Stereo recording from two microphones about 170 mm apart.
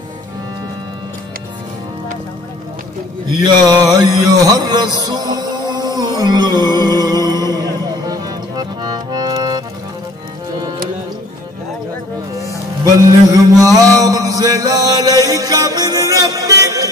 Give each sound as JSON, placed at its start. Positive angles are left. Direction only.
{"t": 3.4, "sound": "music", "side_deg": -25}
{"t": 12.8, "sound": "music", "side_deg": -20}